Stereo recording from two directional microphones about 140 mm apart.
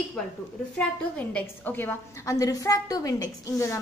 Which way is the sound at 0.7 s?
10° left (ahead or behind).